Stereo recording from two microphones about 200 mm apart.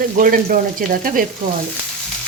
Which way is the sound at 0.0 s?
45° right (ahead or behind).